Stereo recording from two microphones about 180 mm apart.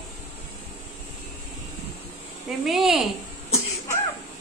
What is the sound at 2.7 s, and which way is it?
Speech, centre (ahead or behind).